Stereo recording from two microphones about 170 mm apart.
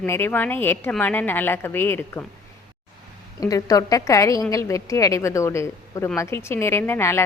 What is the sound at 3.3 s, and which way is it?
A woman's voice, 20° left (ahead or behind).